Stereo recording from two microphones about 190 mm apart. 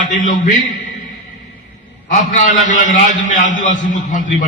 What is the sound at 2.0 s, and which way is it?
A man's voice, 40° left (ahead or behind).